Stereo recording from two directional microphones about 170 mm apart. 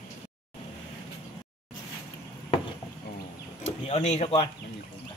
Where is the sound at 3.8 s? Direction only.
40° left (ahead or behind).